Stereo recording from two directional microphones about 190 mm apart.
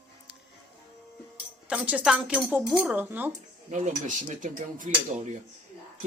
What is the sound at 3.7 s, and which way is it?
Speech, 40° right (ahead or behind).